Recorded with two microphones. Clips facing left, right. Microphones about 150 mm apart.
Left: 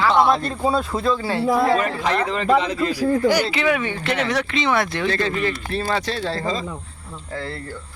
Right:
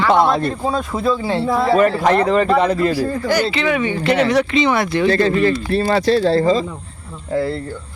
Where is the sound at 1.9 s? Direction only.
45° right (ahead or behind).